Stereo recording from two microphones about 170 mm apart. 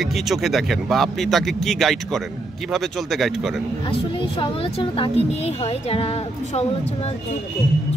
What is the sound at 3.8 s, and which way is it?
A woman's voice, 30° left (ahead or behind).